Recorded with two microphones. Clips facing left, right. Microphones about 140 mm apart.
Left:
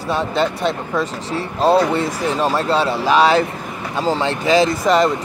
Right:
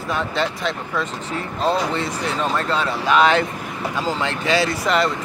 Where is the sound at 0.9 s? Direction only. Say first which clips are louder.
Left 4 dB; 35° left (ahead or behind).